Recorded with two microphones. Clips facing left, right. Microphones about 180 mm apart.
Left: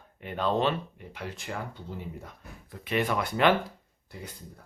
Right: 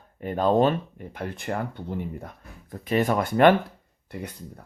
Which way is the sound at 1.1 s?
55° right (ahead or behind).